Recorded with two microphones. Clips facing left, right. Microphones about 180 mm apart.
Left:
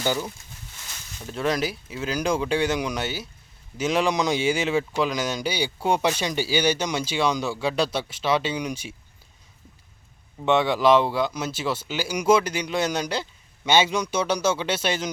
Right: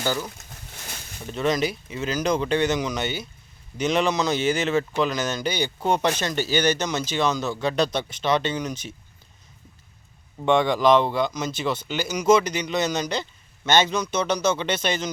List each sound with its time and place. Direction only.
0.0 s speech: 15° left (ahead or behind)
1.3 s speech: 5° left (ahead or behind)
10.4 s speech: 5° left (ahead or behind)